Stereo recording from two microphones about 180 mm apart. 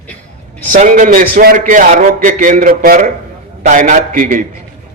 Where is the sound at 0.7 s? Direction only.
45° right (ahead or behind).